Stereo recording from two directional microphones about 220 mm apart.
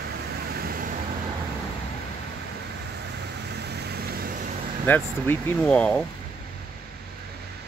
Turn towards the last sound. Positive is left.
turn(degrees=5)  # may be behind; listen again after turning